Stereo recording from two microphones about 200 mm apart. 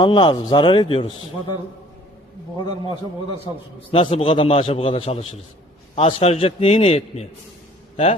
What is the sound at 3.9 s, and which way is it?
A man's voice, 30° left (ahead or behind).